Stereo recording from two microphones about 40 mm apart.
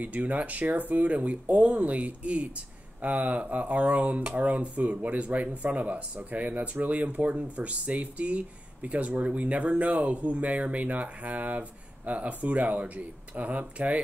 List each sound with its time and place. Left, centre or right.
0.0 s speech: right